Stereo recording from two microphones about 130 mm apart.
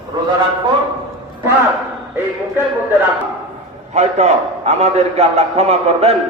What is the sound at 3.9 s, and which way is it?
A man's voice, 55° right (ahead or behind).